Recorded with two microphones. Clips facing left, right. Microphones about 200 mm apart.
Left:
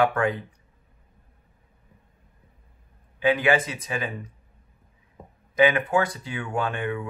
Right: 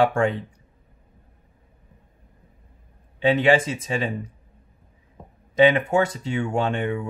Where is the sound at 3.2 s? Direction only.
25° right (ahead or behind).